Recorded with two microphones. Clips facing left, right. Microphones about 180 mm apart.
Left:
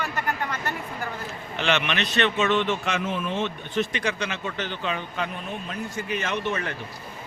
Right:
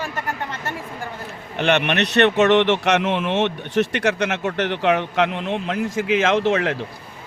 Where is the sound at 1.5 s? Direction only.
60° right (ahead or behind); by 6.7 s 90° right.